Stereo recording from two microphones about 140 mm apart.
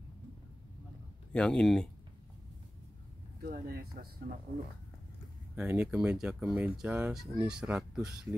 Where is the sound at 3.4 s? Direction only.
90° right.